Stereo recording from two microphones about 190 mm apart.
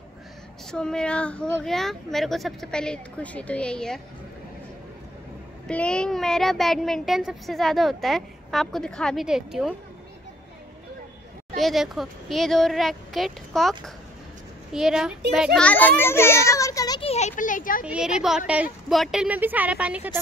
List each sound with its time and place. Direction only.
0.7 s a child's voice: 5° left (ahead or behind)
5.7 s a child's voice: 5° left (ahead or behind)
11.5 s a child's voice: centre (ahead or behind); by 17.1 s 20° left (ahead or behind)
17.1 s speech: 40° left (ahead or behind)
17.8 s a child's voice: 5° right (ahead or behind)